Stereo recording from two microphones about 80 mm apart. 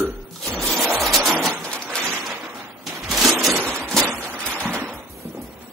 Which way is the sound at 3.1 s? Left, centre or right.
Centre.